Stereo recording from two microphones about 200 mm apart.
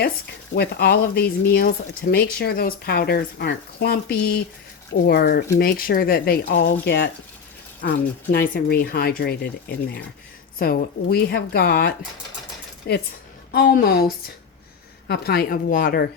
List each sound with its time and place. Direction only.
0.5 s speech: 55° left (ahead or behind)
15.0 s speech: 55° left (ahead or behind)